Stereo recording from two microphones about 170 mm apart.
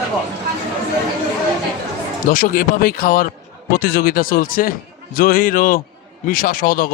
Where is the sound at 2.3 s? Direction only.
55° left (ahead or behind).